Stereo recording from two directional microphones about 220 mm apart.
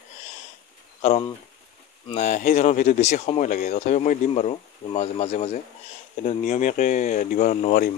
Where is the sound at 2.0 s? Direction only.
30° left (ahead or behind).